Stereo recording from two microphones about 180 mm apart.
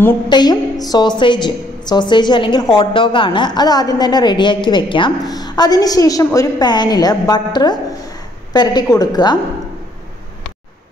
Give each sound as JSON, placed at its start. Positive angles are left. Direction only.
{"t": 0.3, "sound": "a woman's voice", "side_deg": 25}